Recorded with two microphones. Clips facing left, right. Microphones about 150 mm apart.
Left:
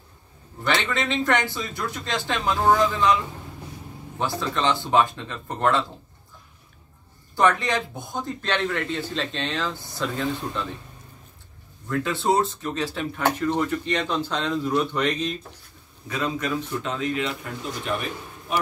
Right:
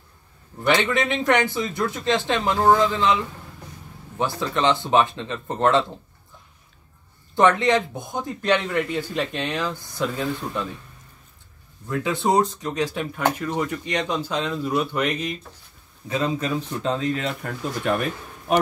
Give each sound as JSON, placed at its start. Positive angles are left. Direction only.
{"t": 0.9, "sound": "speech", "side_deg": -15}
{"t": 4.2, "sound": "speech", "side_deg": -20}
{"t": 7.3, "sound": "speech", "side_deg": -20}
{"t": 11.9, "sound": "speech", "side_deg": -15}
{"t": 16.1, "sound": "speech", "side_deg": -30}